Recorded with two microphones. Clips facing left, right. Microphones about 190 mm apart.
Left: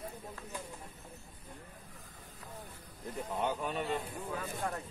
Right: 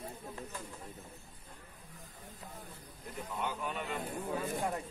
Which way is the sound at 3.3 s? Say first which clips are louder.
Left 3 dB; 30° left (ahead or behind).